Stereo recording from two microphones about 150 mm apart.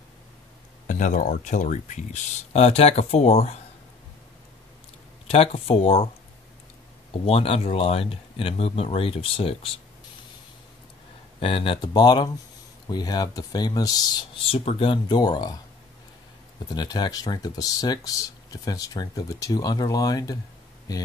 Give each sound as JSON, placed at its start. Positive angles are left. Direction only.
{"t": 0.8, "sound": "speech", "side_deg": 55}
{"t": 2.5, "sound": "speech", "side_deg": 45}
{"t": 5.3, "sound": "speech", "side_deg": 40}
{"t": 7.2, "sound": "speech", "side_deg": 40}
{"t": 11.3, "sound": "speech", "side_deg": 40}
{"t": 14.5, "sound": "speech", "side_deg": 40}
{"t": 16.7, "sound": "speech", "side_deg": 30}